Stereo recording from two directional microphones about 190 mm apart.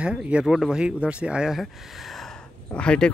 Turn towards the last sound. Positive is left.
turn(degrees=5)  # may be behind; listen again after turning